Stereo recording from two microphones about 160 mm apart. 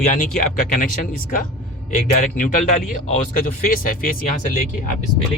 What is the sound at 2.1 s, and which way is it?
Speech, 55° left (ahead or behind).